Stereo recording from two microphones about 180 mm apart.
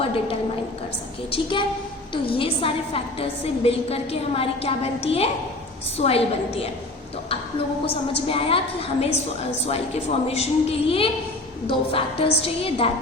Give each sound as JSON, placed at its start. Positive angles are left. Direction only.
{"t": 1.3, "sound": "a woman's voice", "side_deg": 30}
{"t": 7.9, "sound": "a woman's voice", "side_deg": 30}